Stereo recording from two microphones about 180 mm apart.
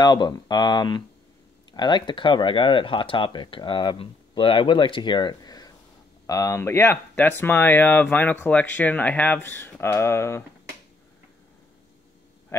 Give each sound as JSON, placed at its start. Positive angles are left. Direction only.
{"t": 0.0, "sound": "speech", "side_deg": 25}